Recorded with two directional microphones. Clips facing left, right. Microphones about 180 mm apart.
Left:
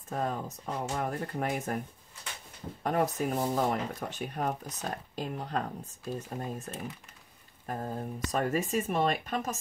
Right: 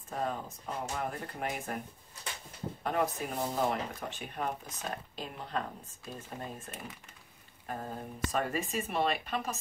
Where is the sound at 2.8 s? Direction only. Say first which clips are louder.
Left 4 dB; 45° left (ahead or behind).